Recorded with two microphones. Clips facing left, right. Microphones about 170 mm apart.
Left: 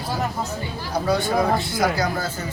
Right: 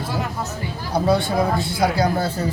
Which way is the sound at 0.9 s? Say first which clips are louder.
Right 2 dB; 30° right (ahead or behind).